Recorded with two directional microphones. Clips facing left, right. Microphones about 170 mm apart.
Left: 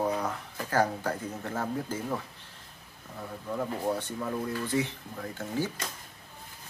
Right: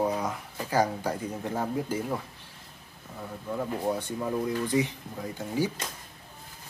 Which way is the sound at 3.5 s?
10° right (ahead or behind).